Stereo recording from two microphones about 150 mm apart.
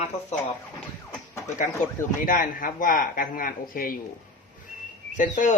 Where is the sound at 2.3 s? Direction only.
65° left (ahead or behind).